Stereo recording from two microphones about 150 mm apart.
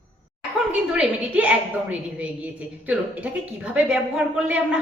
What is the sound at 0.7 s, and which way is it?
A woman's voice, 10° right (ahead or behind).